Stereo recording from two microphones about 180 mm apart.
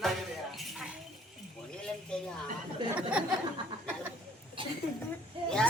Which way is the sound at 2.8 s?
25° right (ahead or behind).